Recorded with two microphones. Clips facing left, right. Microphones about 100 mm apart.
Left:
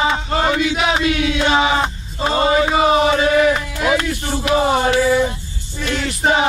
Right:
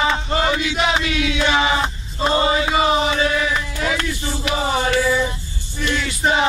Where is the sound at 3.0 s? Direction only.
50° left (ahead or behind).